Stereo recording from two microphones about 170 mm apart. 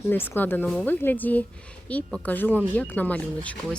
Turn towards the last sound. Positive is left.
turn(degrees=10)  # may be behind; listen again after turning